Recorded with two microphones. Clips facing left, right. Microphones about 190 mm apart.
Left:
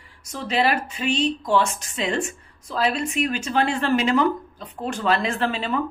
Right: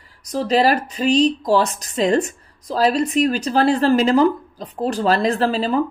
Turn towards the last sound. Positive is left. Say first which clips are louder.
# right 6 dB
turn(degrees=-35)  # may be behind; listen again after turning